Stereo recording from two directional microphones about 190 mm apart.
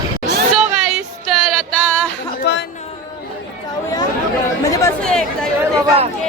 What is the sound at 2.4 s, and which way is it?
Speech, 65° left (ahead or behind).